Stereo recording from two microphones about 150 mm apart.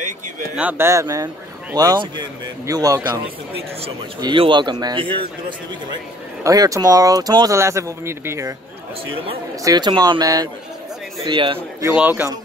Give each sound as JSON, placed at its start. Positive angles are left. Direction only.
{"t": 0.6, "sound": "a man's voice", "side_deg": -15}
{"t": 4.2, "sound": "a man's voice", "side_deg": -30}
{"t": 6.4, "sound": "a man's voice", "side_deg": -25}
{"t": 9.1, "sound": "a man's voice", "side_deg": -35}
{"t": 9.6, "sound": "a man's voice", "side_deg": -25}
{"t": 11.9, "sound": "speech", "side_deg": -10}